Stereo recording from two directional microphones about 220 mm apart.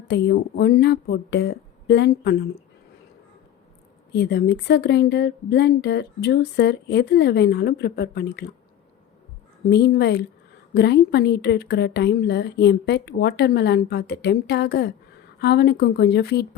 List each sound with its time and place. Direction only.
0.1 s speech: 50° left (ahead or behind)
4.1 s speech: 50° left (ahead or behind)
9.6 s speech: 50° left (ahead or behind)